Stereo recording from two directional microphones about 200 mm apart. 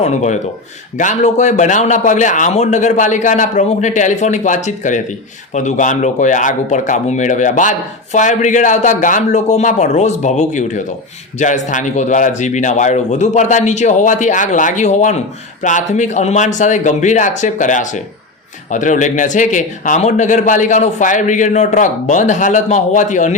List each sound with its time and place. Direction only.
0.0 s speech: 35° left (ahead or behind)